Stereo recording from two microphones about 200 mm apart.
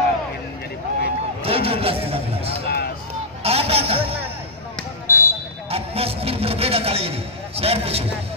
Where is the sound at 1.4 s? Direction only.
30° right (ahead or behind).